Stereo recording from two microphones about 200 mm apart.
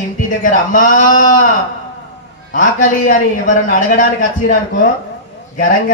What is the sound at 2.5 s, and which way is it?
A man's voice, 40° left (ahead or behind).